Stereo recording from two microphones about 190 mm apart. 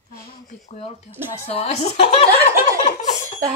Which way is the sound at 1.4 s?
35° left (ahead or behind).